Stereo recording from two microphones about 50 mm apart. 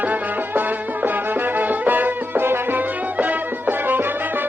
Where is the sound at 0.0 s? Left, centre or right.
Right.